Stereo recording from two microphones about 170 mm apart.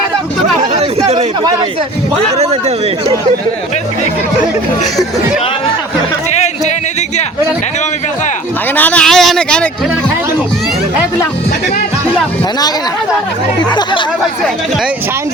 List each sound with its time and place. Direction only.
0.7 s chatter: 40° right (ahead or behind)
2.4 s speech: 40° right (ahead or behind)
8.7 s speech: 10° left (ahead or behind)
13.7 s speech: 25° left (ahead or behind)